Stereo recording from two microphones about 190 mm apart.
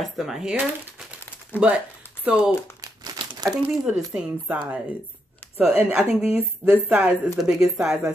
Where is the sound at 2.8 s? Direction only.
20° right (ahead or behind).